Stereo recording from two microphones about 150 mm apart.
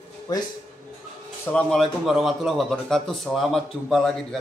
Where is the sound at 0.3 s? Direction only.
25° left (ahead or behind).